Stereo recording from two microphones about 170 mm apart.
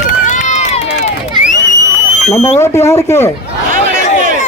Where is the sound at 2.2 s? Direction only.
40° left (ahead or behind).